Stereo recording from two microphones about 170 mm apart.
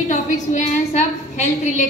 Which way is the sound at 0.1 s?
45° left (ahead or behind).